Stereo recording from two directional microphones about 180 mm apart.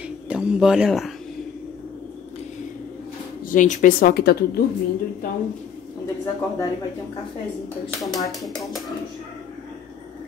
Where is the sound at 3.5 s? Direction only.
45° left (ahead or behind).